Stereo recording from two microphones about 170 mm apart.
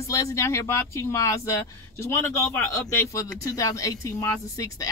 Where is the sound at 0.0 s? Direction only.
20° left (ahead or behind).